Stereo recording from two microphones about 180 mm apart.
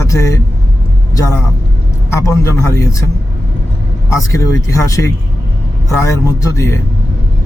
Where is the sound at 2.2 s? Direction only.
15° left (ahead or behind).